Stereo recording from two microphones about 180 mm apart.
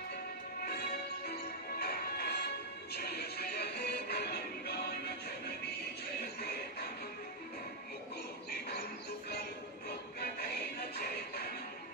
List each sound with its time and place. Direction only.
1.2 s music: 60° left (ahead or behind)